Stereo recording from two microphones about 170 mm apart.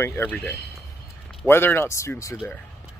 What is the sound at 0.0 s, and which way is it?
Speech, 10° left (ahead or behind).